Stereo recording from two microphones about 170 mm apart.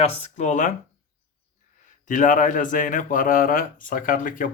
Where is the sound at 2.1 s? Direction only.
50° left (ahead or behind).